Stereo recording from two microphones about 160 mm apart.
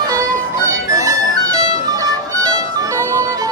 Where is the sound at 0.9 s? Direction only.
20° right (ahead or behind).